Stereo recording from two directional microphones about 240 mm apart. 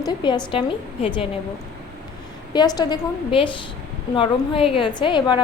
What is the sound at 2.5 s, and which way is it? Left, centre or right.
A woman's voice, centre.